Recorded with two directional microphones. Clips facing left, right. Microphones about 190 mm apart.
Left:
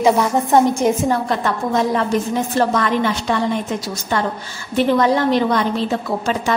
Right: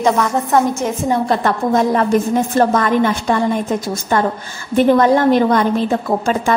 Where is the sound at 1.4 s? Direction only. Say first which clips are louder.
Right 3 dB; 55° right (ahead or behind).